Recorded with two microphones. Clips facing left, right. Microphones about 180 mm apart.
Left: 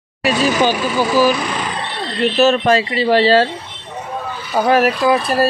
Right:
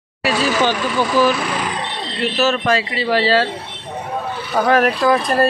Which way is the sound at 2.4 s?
30° left (ahead or behind).